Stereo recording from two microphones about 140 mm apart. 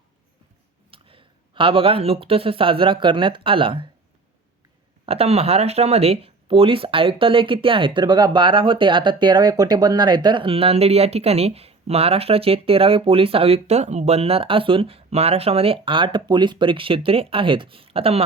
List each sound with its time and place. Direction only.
0.9 s speech: 40° right (ahead or behind)
5.0 s speech: 45° right (ahead or behind)